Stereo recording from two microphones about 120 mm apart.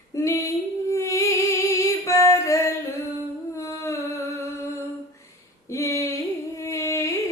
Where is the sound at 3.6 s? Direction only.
25° left (ahead or behind).